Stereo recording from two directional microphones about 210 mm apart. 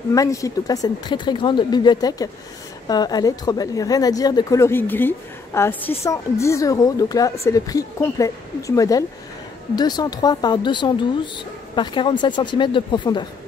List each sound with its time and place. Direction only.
0.1 s speech: 15° left (ahead or behind)